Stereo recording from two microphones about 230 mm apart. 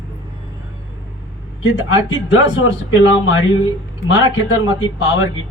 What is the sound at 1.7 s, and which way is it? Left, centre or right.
A man's voice, left.